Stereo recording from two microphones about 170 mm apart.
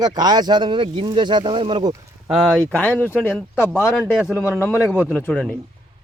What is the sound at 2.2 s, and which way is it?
Speech, centre (ahead or behind).